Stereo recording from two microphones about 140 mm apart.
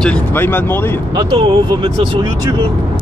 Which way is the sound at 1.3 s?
35° right (ahead or behind).